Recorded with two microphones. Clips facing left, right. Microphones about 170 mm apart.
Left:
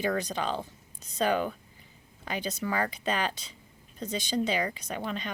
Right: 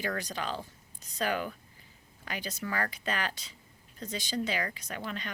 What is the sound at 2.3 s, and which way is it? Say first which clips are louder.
Speech: left 5 dB; 25° left (ahead or behind).